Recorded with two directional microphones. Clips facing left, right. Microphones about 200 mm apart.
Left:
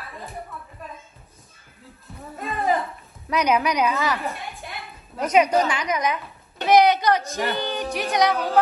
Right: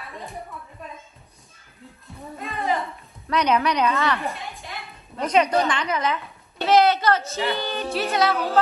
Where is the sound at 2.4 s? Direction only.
Centre (ahead or behind).